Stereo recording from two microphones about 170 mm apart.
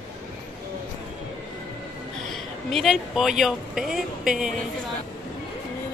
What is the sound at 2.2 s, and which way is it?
Speech, centre (ahead or behind).